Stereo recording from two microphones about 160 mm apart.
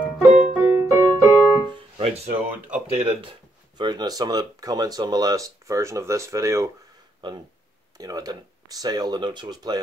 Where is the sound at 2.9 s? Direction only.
40° right (ahead or behind).